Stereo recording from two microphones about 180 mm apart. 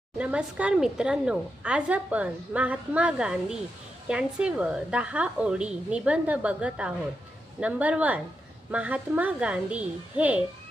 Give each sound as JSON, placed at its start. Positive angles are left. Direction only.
{"t": 0.2, "sound": "a woman's voice", "side_deg": -5}